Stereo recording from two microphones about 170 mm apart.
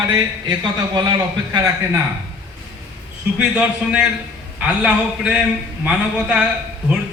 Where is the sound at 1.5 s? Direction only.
20° right (ahead or behind).